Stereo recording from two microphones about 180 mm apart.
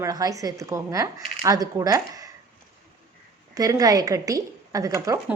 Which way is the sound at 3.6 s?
20° right (ahead or behind).